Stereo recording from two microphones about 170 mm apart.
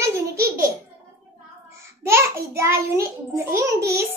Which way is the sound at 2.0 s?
15° right (ahead or behind).